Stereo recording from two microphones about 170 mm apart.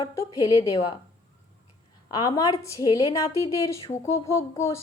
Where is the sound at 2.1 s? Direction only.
20° left (ahead or behind).